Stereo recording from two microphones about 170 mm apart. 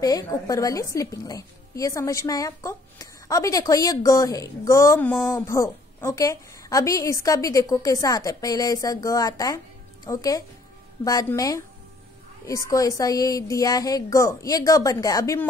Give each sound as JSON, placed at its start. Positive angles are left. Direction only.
{"t": 0.0, "sound": "a woman's voice", "side_deg": 20}